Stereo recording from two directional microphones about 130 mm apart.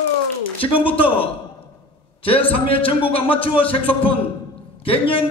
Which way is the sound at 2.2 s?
45° left (ahead or behind).